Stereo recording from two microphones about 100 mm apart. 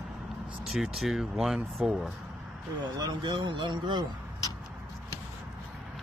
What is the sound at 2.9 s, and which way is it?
Speech, 45° right (ahead or behind).